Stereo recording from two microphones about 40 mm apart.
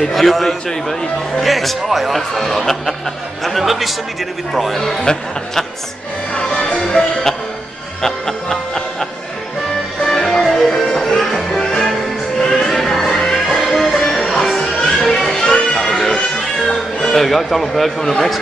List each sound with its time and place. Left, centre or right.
0.0 s speech: centre
3.4 s speech: centre
6.3 s music: centre
10.0 s music: centre
15.8 s music: centre
17.1 s speech: centre